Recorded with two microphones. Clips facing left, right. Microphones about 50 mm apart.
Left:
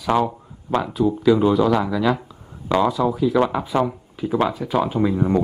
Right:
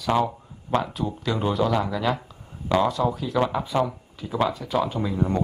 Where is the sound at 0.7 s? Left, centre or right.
Centre.